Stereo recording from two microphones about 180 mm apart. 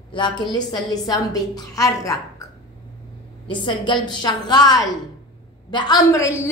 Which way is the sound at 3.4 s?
25° left (ahead or behind).